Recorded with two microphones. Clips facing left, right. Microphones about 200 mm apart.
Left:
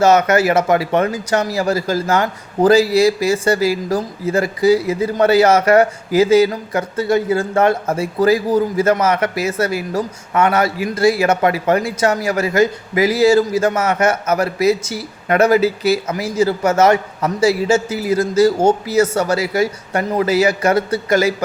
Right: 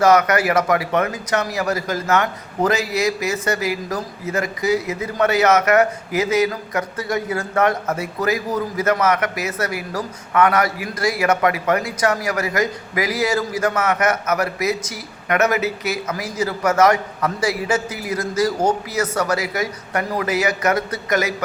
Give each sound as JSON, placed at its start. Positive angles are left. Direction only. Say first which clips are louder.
{"t": 0.0, "sound": "speech", "louder": "left 3 dB", "side_deg": 25}